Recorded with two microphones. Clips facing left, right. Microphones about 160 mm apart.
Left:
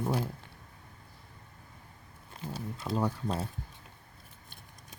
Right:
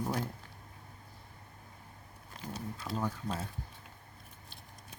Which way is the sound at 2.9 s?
30° left (ahead or behind).